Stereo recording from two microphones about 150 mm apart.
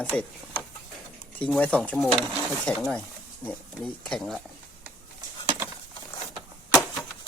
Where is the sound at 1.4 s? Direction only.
10° left (ahead or behind).